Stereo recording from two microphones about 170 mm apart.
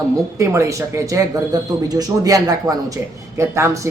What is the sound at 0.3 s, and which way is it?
Speech, 15° right (ahead or behind).